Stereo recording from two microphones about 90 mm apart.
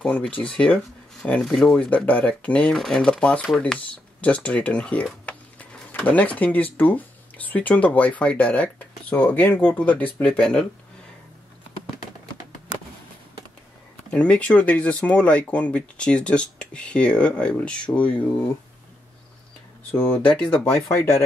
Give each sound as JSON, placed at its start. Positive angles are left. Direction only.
{"t": 0.0, "sound": "speech", "side_deg": 10}
{"t": 10.4, "sound": "speech", "side_deg": 5}
{"t": 14.1, "sound": "speech", "side_deg": 15}
{"t": 20.0, "sound": "speech", "side_deg": 20}